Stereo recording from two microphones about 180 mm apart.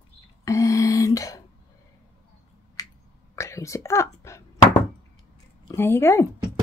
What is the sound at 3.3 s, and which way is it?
Speech, 15° left (ahead or behind).